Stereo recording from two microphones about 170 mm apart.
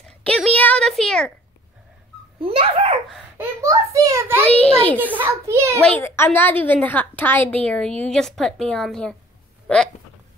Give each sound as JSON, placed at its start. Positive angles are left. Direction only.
{"t": 0.5, "sound": "a sound", "side_deg": 10}
{"t": 2.4, "sound": "a child's voice", "side_deg": -35}
{"t": 3.3, "sound": "a child's voice", "side_deg": -20}
{"t": 4.6, "sound": "a woman's voice", "side_deg": 5}
{"t": 5.1, "sound": "a child's voice", "side_deg": -15}
{"t": 5.8, "sound": "a woman's voice", "side_deg": 10}